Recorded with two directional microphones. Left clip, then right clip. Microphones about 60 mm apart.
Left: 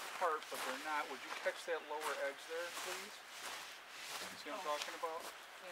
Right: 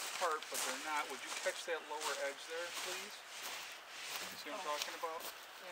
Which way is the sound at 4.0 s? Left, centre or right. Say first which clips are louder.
Right 2 dB; centre.